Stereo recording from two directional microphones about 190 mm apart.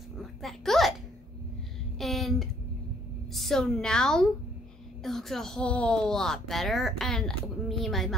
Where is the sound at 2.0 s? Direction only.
Centre (ahead or behind).